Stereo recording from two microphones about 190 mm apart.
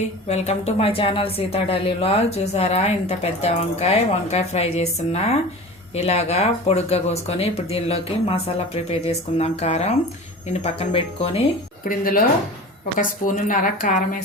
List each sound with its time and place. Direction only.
0.3 s a woman's voice: 35° left (ahead or behind)
11.9 s speech: 50° left (ahead or behind)